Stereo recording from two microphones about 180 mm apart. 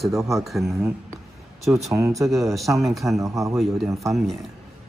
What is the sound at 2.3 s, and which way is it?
Speech, centre (ahead or behind).